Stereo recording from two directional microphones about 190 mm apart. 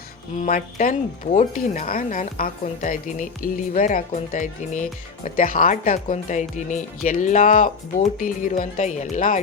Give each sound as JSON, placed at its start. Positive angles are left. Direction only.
{"t": 0.3, "sound": "speech", "side_deg": 45}